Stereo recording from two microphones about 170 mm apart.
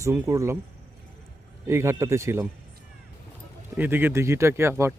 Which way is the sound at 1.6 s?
15° right (ahead or behind).